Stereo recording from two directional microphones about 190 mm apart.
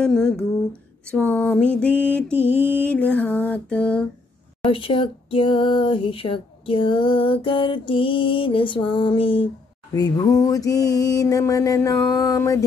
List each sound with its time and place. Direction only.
0.0 s a sound: 5° left (ahead or behind)
1.1 s mantra: 10° left (ahead or behind)
2.3 s mantra: 10° right (ahead or behind)
2.8 s mantra: 5° left (ahead or behind)
4.6 s a sound: 30° left (ahead or behind)
9.9 s mantra: 20° left (ahead or behind)